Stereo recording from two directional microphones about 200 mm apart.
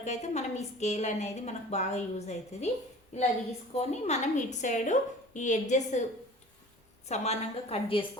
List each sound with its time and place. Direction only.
0.0 s a woman's voice: 35° left (ahead or behind)
7.1 s a woman's voice: 35° left (ahead or behind)